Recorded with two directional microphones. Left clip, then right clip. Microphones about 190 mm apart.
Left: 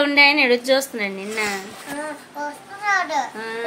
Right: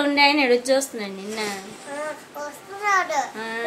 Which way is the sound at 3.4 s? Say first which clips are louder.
Left 1 dB; 20° left (ahead or behind).